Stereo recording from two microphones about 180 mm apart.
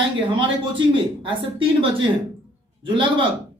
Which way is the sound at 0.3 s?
30° right (ahead or behind).